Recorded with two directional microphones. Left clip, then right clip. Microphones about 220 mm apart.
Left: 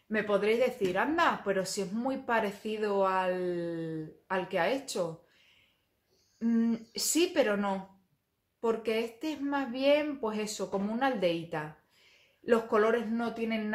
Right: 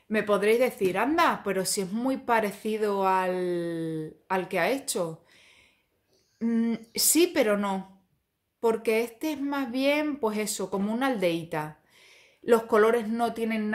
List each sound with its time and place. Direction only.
0.1 s speech: 40° right (ahead or behind)
6.4 s speech: 40° right (ahead or behind)